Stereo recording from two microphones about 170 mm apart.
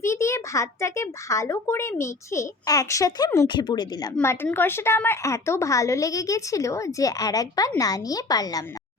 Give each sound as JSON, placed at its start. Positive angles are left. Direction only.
{"t": 0.0, "sound": "a child's voice", "side_deg": 15}
{"t": 4.4, "sound": "a child's voice", "side_deg": 10}